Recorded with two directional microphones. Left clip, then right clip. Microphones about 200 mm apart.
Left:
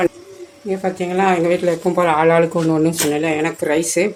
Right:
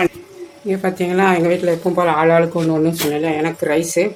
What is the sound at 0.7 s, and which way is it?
Speech, 15° right (ahead or behind).